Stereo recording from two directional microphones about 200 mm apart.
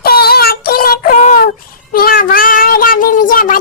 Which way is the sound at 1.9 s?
45° left (ahead or behind).